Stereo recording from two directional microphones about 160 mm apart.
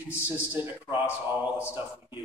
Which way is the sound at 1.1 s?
15° left (ahead or behind).